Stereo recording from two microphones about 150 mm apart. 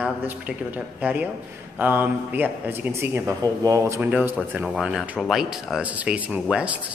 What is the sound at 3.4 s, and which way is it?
A man's voice, 25° right (ahead or behind).